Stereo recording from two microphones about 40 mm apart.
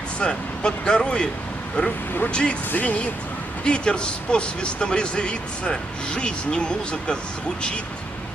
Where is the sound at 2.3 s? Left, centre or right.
Left.